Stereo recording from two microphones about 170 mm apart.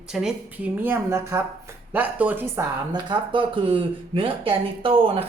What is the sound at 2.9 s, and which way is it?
Speech, 30° right (ahead or behind).